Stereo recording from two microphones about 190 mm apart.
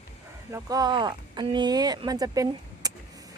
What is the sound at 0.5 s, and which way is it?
Speech, 20° right (ahead or behind).